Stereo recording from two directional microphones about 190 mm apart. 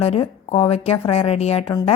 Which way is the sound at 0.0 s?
30° left (ahead or behind).